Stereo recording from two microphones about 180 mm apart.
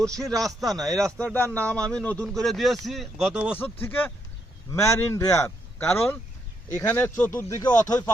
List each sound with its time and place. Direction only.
0.1 s a man's voice: 20° right (ahead or behind)
0.6 s speech: centre (ahead or behind)
1.5 s speech: 15° right (ahead or behind)
1.9 s speech: 5° left (ahead or behind)
3.6 s speech: 10° left (ahead or behind)